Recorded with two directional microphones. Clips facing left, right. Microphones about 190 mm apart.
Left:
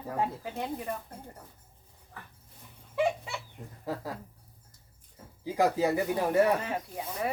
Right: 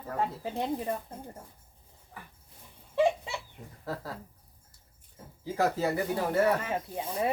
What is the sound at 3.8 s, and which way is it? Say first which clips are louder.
Speech: left 2 dB; 15° left (ahead or behind).